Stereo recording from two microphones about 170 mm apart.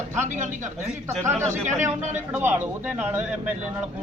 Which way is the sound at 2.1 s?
10° right (ahead or behind).